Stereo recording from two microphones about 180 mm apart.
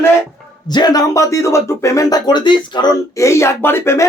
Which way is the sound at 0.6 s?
25° left (ahead or behind).